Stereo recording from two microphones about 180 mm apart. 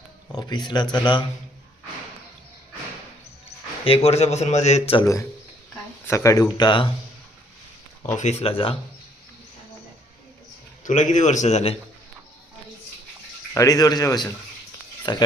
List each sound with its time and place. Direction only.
0.3 s speech: 20° left (ahead or behind)
3.8 s a man's voice: 35° left (ahead or behind)
6.1 s speech: 15° left (ahead or behind)
8.0 s a man's voice: 40° left (ahead or behind)
10.8 s a man's voice: 45° left (ahead or behind)
13.5 s speech: 20° left (ahead or behind)